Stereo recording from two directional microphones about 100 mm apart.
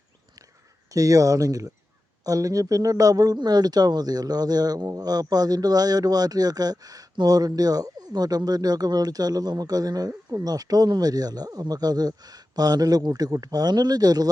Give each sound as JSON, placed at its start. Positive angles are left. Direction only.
{"t": 0.9, "sound": "a man's voice", "side_deg": -35}